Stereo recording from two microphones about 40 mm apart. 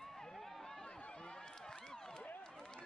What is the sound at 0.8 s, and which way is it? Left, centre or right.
Run, left.